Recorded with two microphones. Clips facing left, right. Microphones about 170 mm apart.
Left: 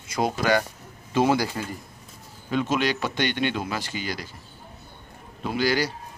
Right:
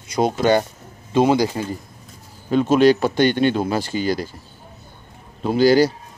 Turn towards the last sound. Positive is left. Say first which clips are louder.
# right 10 dB
turn(degrees=-35)  # may be behind; listen again after turning